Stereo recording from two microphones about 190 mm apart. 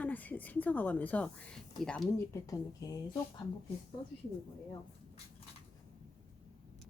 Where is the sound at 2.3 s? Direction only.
20° left (ahead or behind).